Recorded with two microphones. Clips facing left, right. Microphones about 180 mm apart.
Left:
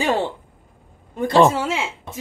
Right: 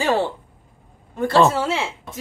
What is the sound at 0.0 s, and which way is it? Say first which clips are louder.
Speech: right 1 dB; 20° left (ahead or behind).